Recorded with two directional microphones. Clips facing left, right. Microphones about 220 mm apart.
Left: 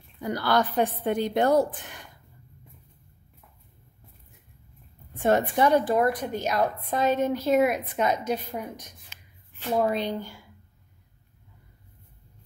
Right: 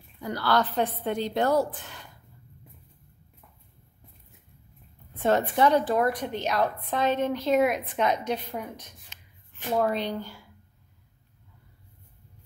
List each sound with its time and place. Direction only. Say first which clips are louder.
0.2 s a woman's voice: left 1 dB; 15° left (ahead or behind)
5.2 s a woman's voice: left 1 dB; 15° left (ahead or behind)